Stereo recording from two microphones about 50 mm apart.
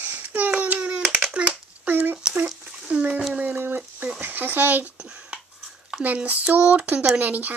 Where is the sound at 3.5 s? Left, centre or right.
Right.